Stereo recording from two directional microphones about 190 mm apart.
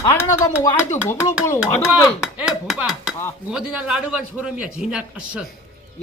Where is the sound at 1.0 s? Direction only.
15° left (ahead or behind).